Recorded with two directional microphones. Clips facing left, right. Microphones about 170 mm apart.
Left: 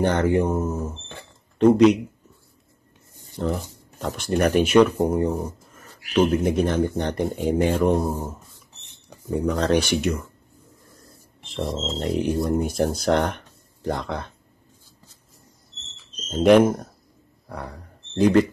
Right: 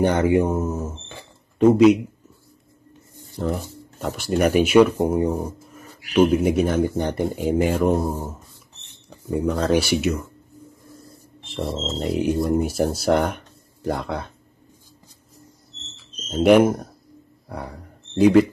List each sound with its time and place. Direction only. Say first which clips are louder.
0.0 s speech: right 2 dB; 10° right (ahead or behind)
3.4 s speech: right 1 dB; centre (ahead or behind)
9.3 s speech: right 1 dB; 10° right (ahead or behind)
11.4 s speech: right 1 dB; centre (ahead or behind)
16.0 s a sound: right 1 dB; 5° right (ahead or behind)
17.5 s speech: right 2 dB; 10° right (ahead or behind)